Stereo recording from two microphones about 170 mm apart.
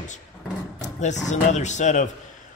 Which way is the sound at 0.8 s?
45° left (ahead or behind).